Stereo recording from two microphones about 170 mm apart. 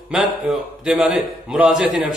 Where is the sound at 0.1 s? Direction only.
5° right (ahead or behind).